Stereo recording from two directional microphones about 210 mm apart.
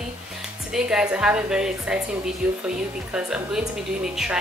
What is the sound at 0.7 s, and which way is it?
A woman's voice, 5° right (ahead or behind).